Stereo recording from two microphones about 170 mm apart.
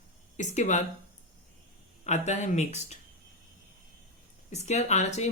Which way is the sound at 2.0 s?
40° left (ahead or behind).